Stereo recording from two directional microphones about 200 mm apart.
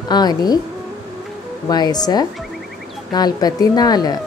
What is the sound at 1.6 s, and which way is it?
Speech, 20° left (ahead or behind).